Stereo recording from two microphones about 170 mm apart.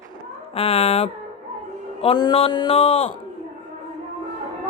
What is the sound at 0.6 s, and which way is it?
Speech, 35° left (ahead or behind).